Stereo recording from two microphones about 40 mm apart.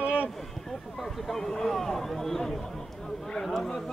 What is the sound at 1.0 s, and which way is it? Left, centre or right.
Speech, centre.